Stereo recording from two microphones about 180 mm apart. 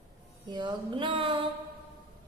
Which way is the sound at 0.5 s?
25° right (ahead or behind).